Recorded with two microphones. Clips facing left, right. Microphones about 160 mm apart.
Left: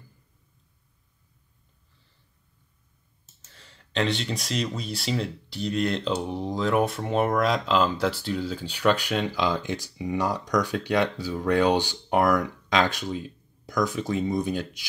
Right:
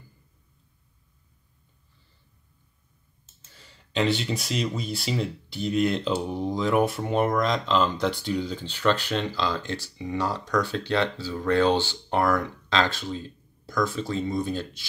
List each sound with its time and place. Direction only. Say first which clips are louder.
3.5 s speech: right 1 dB; centre (ahead or behind); by 14.9 s 15° left (ahead or behind)